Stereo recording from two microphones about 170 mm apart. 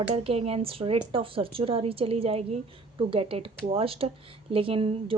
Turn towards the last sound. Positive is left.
turn(degrees=-35)  # may be behind; listen again after turning